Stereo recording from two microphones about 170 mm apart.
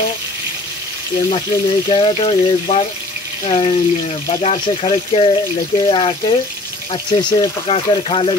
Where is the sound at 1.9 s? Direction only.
30° left (ahead or behind).